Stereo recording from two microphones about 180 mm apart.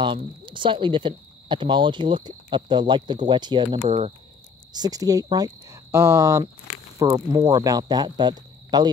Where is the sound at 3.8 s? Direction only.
35° right (ahead or behind).